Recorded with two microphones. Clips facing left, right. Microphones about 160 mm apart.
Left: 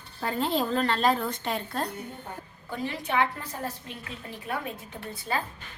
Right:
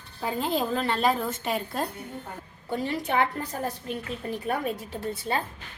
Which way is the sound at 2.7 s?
35° right (ahead or behind).